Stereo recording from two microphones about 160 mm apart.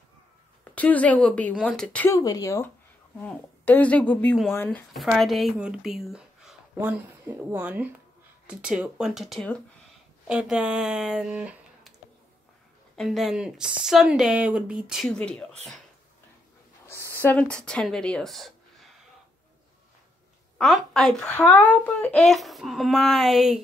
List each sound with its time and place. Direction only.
0.7 s speech: 10° left (ahead or behind)
2.1 s speech: 20° left (ahead or behind); by 11.9 s 5° right (ahead or behind)
12.9 s speech: centre (ahead or behind)
17.2 s speech: 10° left (ahead or behind)
20.5 s speech: centre (ahead or behind)